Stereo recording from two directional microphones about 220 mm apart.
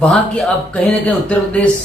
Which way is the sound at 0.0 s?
5° left (ahead or behind).